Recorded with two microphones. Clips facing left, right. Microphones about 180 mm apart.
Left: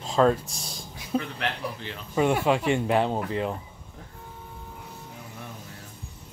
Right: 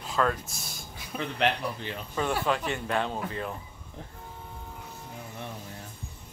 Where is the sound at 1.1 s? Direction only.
30° left (ahead or behind).